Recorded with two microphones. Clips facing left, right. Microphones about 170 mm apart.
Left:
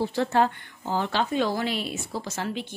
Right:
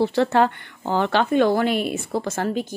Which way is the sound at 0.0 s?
70° right (ahead or behind).